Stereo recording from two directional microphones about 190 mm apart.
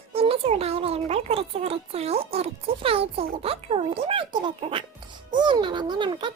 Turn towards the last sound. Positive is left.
turn(degrees=-25)  # may be behind; listen again after turning